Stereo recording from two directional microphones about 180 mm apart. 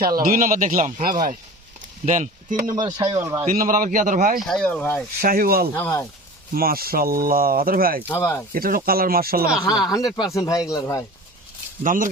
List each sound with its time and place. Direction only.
0.2 s speech: 50° right (ahead or behind)
2.7 s speech: 25° right (ahead or behind)
3.4 s speech: 50° right (ahead or behind)
4.4 s speech: centre (ahead or behind)
5.2 s speech: 55° right (ahead or behind)
5.7 s speech: 15° left (ahead or behind)
6.5 s speech: 55° right (ahead or behind)
8.0 s speech: 10° left (ahead or behind)
8.5 s speech: 55° right (ahead or behind)
9.6 s speech: 20° left (ahead or behind)
11.8 s speech: 50° right (ahead or behind)